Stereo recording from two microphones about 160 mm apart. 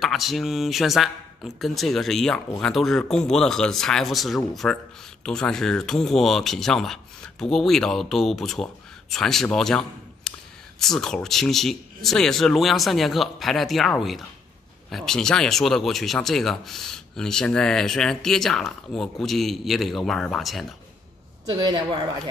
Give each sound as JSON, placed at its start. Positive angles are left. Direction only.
{"t": 0.0, "sound": "a man's voice", "side_deg": 0}
{"t": 21.5, "sound": "speech", "side_deg": -25}